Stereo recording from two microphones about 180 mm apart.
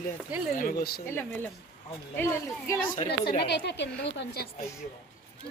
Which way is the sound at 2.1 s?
15° left (ahead or behind).